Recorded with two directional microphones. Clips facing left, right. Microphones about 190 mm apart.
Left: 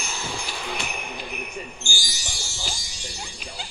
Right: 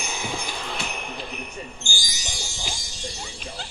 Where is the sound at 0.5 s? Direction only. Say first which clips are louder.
Even; centre (ahead or behind).